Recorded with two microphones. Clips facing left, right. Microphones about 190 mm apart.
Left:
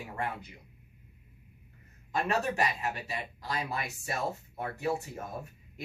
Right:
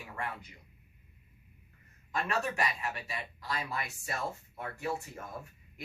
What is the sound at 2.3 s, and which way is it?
Speech, 25° left (ahead or behind).